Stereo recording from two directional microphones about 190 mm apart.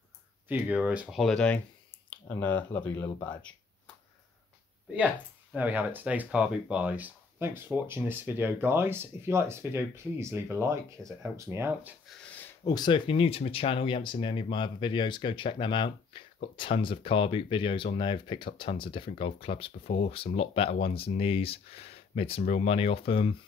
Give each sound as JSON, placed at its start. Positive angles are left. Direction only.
{"t": 0.5, "sound": "speech", "side_deg": -10}
{"t": 4.9, "sound": "speech", "side_deg": -10}
{"t": 12.6, "sound": "speech", "side_deg": 20}